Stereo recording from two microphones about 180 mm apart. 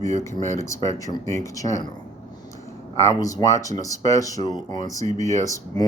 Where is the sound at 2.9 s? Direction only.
20° left (ahead or behind).